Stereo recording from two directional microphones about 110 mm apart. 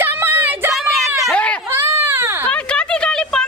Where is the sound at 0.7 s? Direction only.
Centre (ahead or behind).